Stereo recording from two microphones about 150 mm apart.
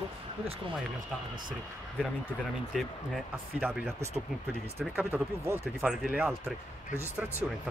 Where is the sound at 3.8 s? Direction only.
15° right (ahead or behind).